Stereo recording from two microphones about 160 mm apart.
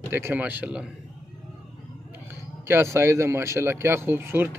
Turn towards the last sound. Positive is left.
turn(degrees=-15)  # may be behind; listen again after turning